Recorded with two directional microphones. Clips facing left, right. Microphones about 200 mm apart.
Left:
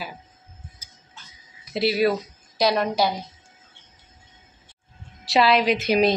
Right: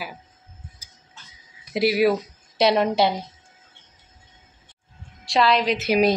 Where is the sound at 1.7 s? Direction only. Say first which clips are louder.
Right 2 dB; 10° right (ahead or behind).